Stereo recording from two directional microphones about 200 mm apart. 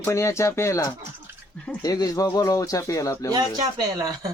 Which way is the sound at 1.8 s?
20° left (ahead or behind).